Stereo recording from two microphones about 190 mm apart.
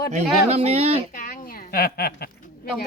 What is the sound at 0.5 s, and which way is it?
Speech, 35° right (ahead or behind).